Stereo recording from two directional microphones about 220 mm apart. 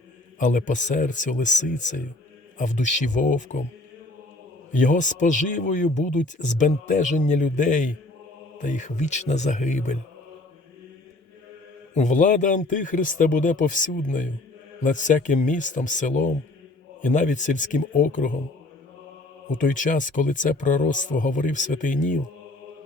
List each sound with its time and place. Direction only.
0.3 s speech: 35° left (ahead or behind)
4.7 s speech: 35° left (ahead or behind)
11.9 s speech: 35° left (ahead or behind)
19.5 s speech: 35° left (ahead or behind)